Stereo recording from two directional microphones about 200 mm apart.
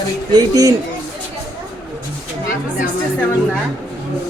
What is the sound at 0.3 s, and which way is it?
Speech, 20° right (ahead or behind).